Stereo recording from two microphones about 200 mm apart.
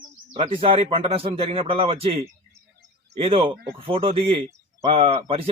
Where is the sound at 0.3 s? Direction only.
25° right (ahead or behind).